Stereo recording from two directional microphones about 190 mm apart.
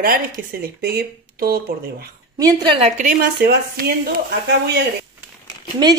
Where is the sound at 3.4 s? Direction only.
50° right (ahead or behind).